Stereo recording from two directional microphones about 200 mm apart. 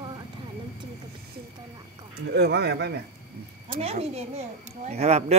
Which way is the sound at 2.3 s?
55° right (ahead or behind).